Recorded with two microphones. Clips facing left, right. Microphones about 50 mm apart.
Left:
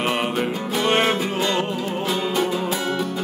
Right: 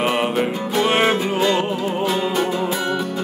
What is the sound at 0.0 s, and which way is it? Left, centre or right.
Music, centre.